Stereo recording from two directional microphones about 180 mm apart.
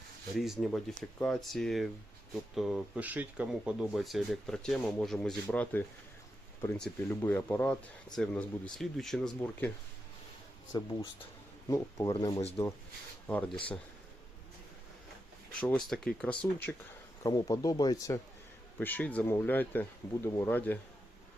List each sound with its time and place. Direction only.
0.3 s speech: centre (ahead or behind)
10.7 s speech: 20° left (ahead or behind)
12.1 s speech: 30° left (ahead or behind)
13.2 s speech: 5° left (ahead or behind)
15.6 s speech: 5° left (ahead or behind)
17.2 s speech: 20° left (ahead or behind)